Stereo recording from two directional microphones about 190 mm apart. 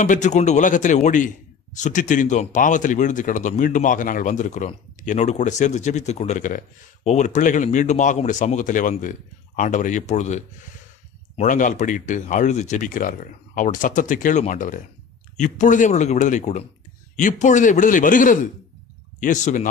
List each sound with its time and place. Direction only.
0.0 s a man's voice: 40° left (ahead or behind)